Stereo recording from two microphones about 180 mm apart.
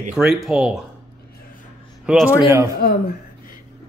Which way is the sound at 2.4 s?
15° right (ahead or behind).